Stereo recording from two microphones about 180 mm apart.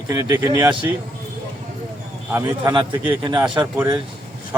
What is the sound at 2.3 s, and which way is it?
Speech, 15° right (ahead or behind).